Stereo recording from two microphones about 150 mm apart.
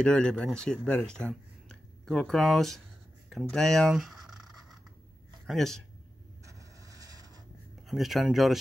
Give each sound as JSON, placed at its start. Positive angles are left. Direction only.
{"t": 0.0, "sound": "speech", "side_deg": 5}
{"t": 3.3, "sound": "writing", "side_deg": 0}
{"t": 5.5, "sound": "speech", "side_deg": 5}
{"t": 6.4, "sound": "a sound", "side_deg": -20}
{"t": 7.8, "sound": "speech", "side_deg": 0}